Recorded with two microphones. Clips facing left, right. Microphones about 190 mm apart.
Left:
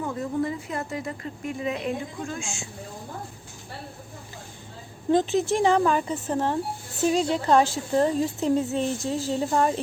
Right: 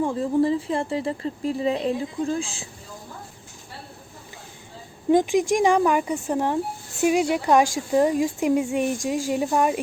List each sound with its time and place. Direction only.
0.0 s a woman's voice: 30° right (ahead or behind)
5.1 s a woman's voice: 10° right (ahead or behind)